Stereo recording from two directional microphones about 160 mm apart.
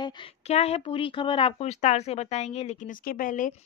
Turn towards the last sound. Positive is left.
turn(degrees=55)  # may be behind; listen again after turning